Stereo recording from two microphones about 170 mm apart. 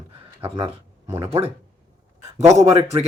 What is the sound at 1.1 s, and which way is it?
Speech, 15° right (ahead or behind).